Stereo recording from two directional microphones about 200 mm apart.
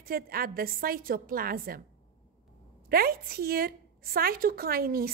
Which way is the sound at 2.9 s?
50° right (ahead or behind).